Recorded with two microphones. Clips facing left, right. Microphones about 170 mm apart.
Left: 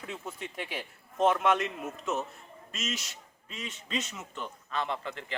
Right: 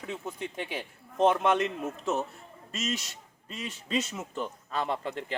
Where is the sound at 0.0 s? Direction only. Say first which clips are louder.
Right 3 dB; 20° right (ahead or behind).